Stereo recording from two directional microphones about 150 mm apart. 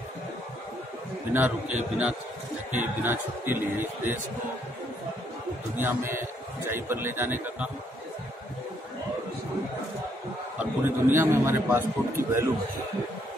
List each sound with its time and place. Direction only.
1.3 s a man's voice: 10° right (ahead or behind)
5.8 s a man's voice: 15° right (ahead or behind)
10.6 s a man's voice: 15° right (ahead or behind)